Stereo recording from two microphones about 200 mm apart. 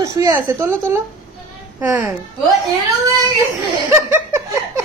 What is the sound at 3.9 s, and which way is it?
Laughter, 15° right (ahead or behind).